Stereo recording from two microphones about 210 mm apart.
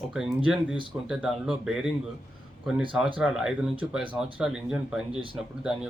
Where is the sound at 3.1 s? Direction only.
5° right (ahead or behind).